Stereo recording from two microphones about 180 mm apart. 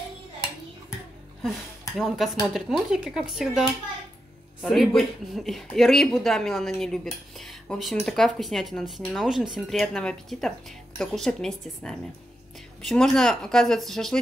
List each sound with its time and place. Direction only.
2.0 s speech: centre (ahead or behind)